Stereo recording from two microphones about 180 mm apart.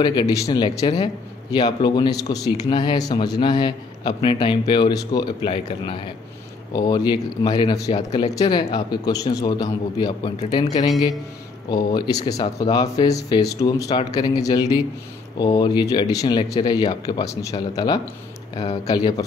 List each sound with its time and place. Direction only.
0.0 s speech: 25° left (ahead or behind)
11.7 s speech: 20° left (ahead or behind)